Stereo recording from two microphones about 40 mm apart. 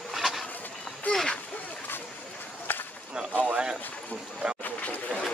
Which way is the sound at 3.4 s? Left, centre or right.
Right.